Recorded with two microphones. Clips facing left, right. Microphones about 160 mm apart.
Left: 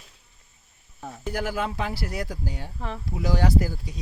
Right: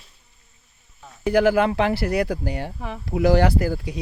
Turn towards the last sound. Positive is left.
turn(degrees=-70)  # may be behind; listen again after turning